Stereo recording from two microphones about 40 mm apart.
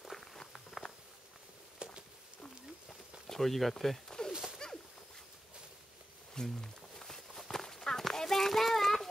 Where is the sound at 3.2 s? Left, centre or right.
Centre.